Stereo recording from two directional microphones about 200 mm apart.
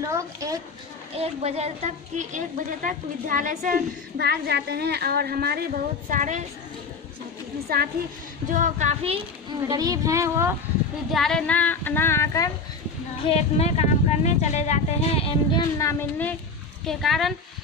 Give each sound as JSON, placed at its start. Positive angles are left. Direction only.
{"t": 0.0, "sound": "a sound", "side_deg": -15}
{"t": 1.1, "sound": "a woman's voice", "side_deg": -30}
{"t": 8.5, "sound": "speech", "side_deg": -40}
{"t": 9.7, "sound": "speech", "side_deg": -20}
{"t": 11.1, "sound": "speech", "side_deg": 0}
{"t": 13.2, "sound": "speech", "side_deg": 30}
{"t": 15.8, "sound": "speech", "side_deg": 10}